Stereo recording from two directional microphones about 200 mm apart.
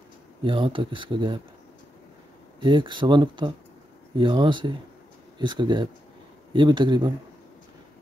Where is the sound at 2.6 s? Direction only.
25° right (ahead or behind).